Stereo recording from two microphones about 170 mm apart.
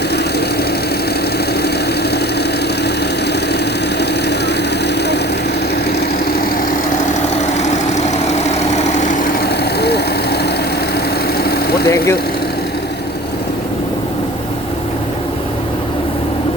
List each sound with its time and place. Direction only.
7.6 s vehicle: 45° left (ahead or behind); by 10.0 s 70° left (ahead or behind)
11.4 s engine: 70° left (ahead or behind)
11.9 s vehicle: 15° left (ahead or behind)